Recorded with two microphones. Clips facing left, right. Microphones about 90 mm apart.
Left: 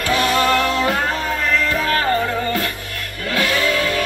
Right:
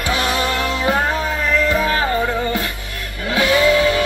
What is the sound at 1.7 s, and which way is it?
Music, 15° right (ahead or behind).